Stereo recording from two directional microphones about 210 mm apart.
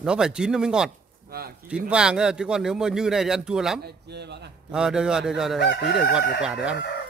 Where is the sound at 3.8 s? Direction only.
50° right (ahead or behind).